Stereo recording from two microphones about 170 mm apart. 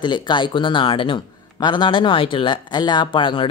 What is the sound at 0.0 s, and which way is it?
A man's voice, 25° left (ahead or behind).